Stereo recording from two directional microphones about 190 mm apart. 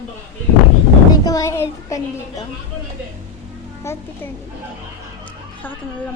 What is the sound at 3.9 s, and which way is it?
Speech, 15° left (ahead or behind).